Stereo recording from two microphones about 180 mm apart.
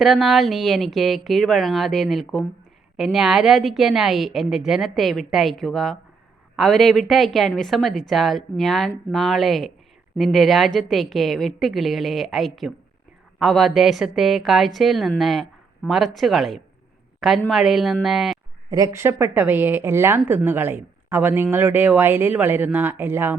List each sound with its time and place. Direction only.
0.0 s a woman's voice: centre (ahead or behind)
18.7 s a woman's voice: 15° right (ahead or behind)